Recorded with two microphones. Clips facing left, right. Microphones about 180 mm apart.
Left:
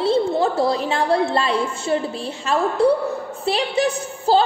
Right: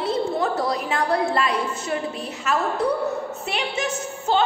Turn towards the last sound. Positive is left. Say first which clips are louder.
# left 5 dB
turn(degrees=35)  # may be behind; listen again after turning